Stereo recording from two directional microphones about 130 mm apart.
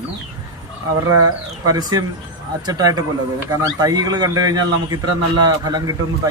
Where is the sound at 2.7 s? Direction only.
30° right (ahead or behind).